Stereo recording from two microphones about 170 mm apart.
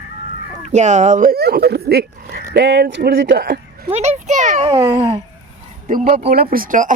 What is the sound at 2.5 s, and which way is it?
Speech, 80° right.